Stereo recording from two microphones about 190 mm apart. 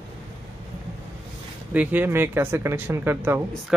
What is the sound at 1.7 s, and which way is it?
Speech, 10° right (ahead or behind).